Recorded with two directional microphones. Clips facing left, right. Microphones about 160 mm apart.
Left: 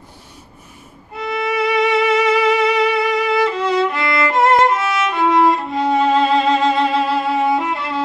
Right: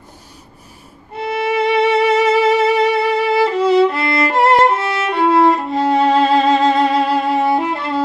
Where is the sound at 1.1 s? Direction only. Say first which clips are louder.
Right 2 dB; 30° right (ahead or behind).